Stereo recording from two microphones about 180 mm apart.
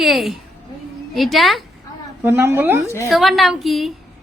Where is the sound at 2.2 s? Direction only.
10° right (ahead or behind).